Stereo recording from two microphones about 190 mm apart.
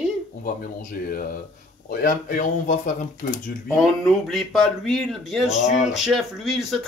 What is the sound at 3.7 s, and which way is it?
Speech, centre (ahead or behind).